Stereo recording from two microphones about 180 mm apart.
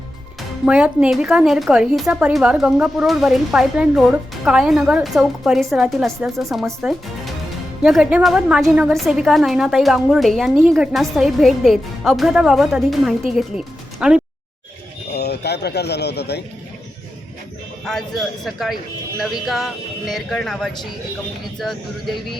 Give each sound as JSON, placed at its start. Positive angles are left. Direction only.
{"t": 0.6, "sound": "a woman's voice", "side_deg": -5}
{"t": 7.8, "sound": "a woman's voice", "side_deg": -5}
{"t": 15.1, "sound": "speech", "side_deg": 65}
{"t": 17.8, "sound": "a woman's voice", "side_deg": 0}